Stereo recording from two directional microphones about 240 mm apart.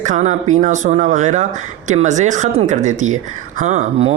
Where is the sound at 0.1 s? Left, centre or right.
Right.